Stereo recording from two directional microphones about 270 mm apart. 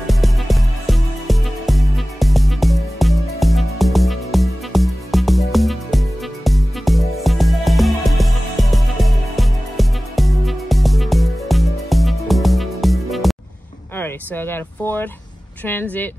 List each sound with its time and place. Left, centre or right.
0.0 s music: centre
13.9 s speech: centre